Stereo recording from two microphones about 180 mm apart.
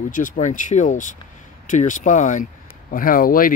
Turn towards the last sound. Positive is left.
turn(degrees=50)  # may be behind; listen again after turning